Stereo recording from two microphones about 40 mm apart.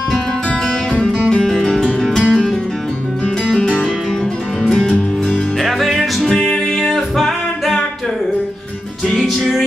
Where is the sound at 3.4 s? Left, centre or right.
Centre.